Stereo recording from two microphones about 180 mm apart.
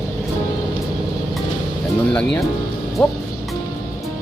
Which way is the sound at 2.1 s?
10° left (ahead or behind).